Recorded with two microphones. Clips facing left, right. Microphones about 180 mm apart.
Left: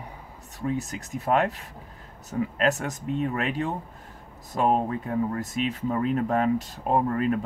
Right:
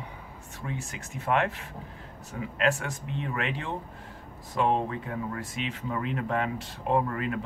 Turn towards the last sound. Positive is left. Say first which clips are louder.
# left 4 dB
turn(degrees=40)  # may be behind; listen again after turning